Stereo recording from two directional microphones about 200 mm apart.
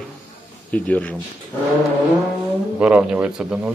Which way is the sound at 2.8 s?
5° right (ahead or behind).